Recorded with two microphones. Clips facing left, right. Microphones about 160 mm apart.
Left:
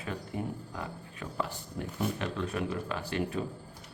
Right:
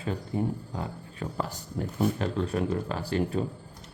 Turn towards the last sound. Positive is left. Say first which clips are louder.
# right 4 dB
turn(degrees=-35)  # may be behind; listen again after turning